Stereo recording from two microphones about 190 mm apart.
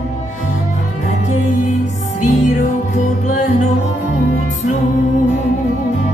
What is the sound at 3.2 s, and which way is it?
Music, 40° left (ahead or behind).